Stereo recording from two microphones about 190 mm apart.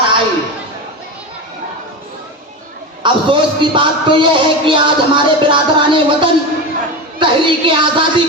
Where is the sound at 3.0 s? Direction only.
25° right (ahead or behind).